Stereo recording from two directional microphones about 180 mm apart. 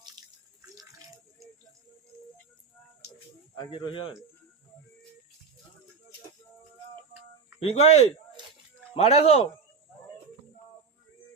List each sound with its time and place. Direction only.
0.2 s water: 25° right (ahead or behind)
3.7 s speech: 25° left (ahead or behind)
7.6 s speech: 35° left (ahead or behind)